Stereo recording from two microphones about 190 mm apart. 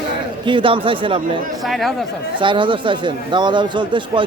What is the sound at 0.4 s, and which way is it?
Speech, 25° right (ahead or behind).